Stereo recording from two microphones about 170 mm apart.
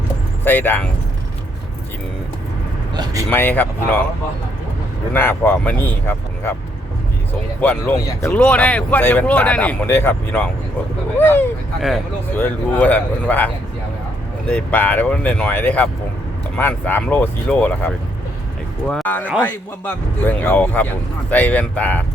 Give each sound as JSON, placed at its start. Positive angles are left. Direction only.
{"t": 0.4, "sound": "speech", "side_deg": 10}
{"t": 2.9, "sound": "speech", "side_deg": -25}
{"t": 3.2, "sound": "speech", "side_deg": 10}
{"t": 5.1, "sound": "speech", "side_deg": 10}
{"t": 7.6, "sound": "speech", "side_deg": 10}